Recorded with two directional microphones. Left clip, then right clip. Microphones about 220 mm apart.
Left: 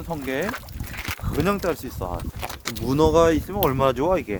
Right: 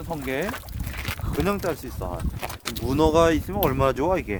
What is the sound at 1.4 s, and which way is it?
Speech, 40° left (ahead or behind).